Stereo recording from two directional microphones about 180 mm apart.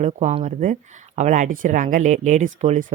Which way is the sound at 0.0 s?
40° right (ahead or behind).